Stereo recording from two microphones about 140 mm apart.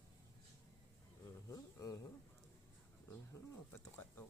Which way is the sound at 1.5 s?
25° left (ahead or behind).